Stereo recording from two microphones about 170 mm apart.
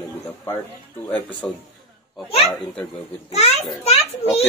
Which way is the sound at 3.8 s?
35° left (ahead or behind).